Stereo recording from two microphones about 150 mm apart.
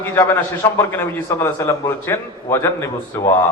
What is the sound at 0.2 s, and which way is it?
A man's voice, 15° left (ahead or behind).